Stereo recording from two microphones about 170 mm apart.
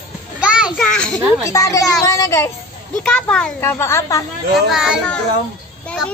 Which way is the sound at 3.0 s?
5° left (ahead or behind).